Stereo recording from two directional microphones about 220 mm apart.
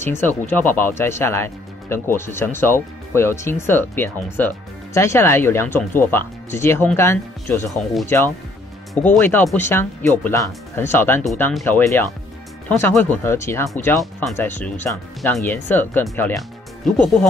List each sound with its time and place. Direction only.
0.0 s speech: 10° left (ahead or behind)